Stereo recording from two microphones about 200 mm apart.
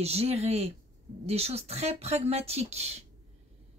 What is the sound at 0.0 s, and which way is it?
Speech, 30° right (ahead or behind).